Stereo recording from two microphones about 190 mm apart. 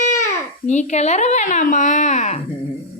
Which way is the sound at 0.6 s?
35° left (ahead or behind).